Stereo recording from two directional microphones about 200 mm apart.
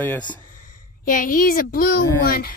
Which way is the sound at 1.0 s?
45° left (ahead or behind).